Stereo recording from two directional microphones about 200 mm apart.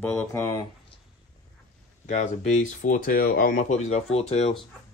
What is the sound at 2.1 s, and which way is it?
Speech, 35° left (ahead or behind).